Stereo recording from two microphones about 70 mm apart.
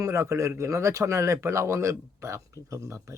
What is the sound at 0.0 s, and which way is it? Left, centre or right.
Speech, right.